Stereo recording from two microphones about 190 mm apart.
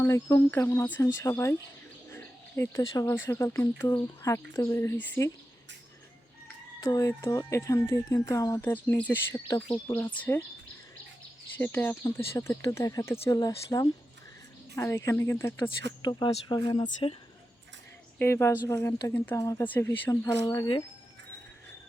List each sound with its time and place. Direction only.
0.0 s speech: 15° left (ahead or behind)
6.7 s speech: 20° left (ahead or behind)
11.5 s speech: 10° left (ahead or behind)
16.0 s speech: 25° left (ahead or behind)
18.2 s speech: 15° left (ahead or behind)
20.4 s speech: 25° left (ahead or behind)